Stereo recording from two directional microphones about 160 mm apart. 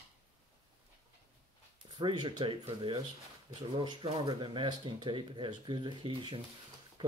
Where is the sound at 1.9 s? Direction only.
30° right (ahead or behind).